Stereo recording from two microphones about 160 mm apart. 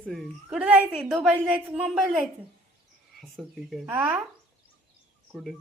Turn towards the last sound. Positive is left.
turn(degrees=-10)  # may be behind; listen again after turning